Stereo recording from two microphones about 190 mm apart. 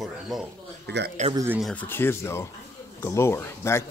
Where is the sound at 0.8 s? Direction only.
60° right (ahead or behind).